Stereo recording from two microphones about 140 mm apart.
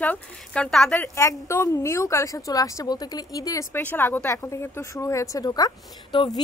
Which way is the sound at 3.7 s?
15° left (ahead or behind).